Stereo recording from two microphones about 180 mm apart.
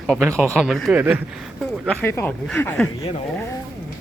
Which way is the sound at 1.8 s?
5° left (ahead or behind).